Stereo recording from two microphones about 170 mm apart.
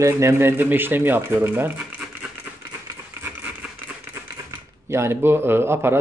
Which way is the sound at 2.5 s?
10° right (ahead or behind).